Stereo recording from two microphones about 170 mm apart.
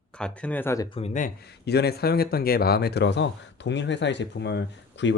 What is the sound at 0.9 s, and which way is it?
Speech, 35° left (ahead or behind).